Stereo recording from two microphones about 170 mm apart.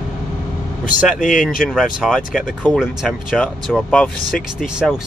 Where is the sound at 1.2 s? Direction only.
50° left (ahead or behind).